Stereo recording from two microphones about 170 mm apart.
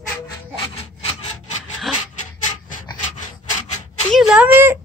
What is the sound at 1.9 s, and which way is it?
Dog, centre (ahead or behind).